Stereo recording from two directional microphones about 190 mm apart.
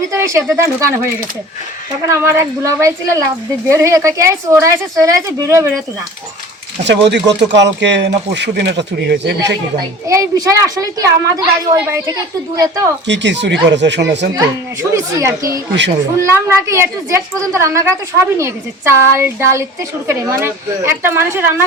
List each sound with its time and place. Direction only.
0.1 s speech: 15° right (ahead or behind)
2.0 s speech: 15° right (ahead or behind)
6.8 s speech: 65° right (ahead or behind)
10.1 s speech: 15° right (ahead or behind)
13.1 s speech: 65° right (ahead or behind)
14.3 s speech: 15° right (ahead or behind)